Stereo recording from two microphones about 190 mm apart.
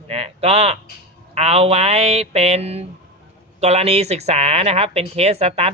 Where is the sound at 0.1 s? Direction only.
35° right (ahead or behind).